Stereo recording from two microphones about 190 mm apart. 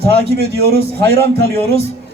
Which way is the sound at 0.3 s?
55° right (ahead or behind).